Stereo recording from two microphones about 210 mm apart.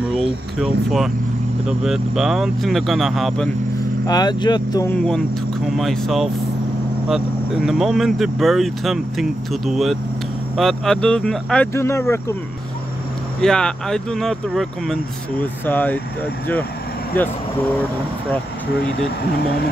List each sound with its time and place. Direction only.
0.6 s speech: centre (ahead or behind)
4.1 s speech: 20° left (ahead or behind)
4.9 s speech: 5° left (ahead or behind)
13.4 s speech: 5° left (ahead or behind)